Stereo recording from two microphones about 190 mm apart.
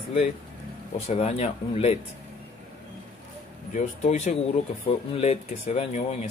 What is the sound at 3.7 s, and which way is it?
Speech, 40° left (ahead or behind).